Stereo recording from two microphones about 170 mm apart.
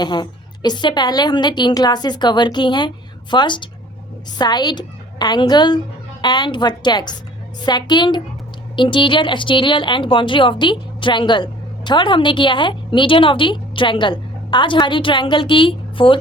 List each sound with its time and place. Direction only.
0.0 s a woman's voice: 25° left (ahead or behind)